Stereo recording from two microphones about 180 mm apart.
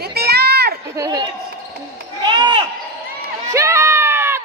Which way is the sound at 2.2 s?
25° right (ahead or behind).